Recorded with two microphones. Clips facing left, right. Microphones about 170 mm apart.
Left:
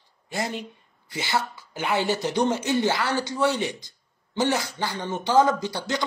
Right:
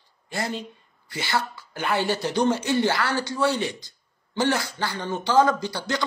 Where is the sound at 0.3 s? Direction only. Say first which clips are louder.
Even; 15° left (ahead or behind).